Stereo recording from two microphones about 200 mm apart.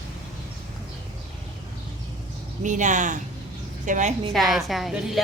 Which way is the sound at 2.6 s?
35° right (ahead or behind).